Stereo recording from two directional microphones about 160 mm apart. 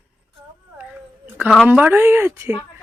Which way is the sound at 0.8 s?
10° right (ahead or behind).